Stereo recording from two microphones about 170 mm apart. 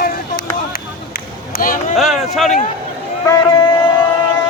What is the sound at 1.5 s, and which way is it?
Speech, 55° left (ahead or behind).